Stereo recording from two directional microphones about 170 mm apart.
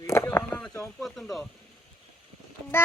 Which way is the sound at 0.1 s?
15° left (ahead or behind).